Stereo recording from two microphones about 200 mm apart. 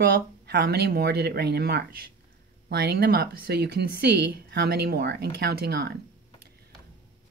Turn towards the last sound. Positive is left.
turn(degrees=-55)  # may be behind; listen again after turning